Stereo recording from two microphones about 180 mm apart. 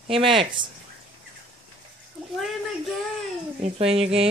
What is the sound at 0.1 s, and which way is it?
Speech, 30° right (ahead or behind).